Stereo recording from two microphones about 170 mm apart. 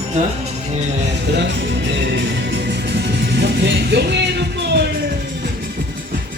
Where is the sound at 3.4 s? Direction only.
85° right.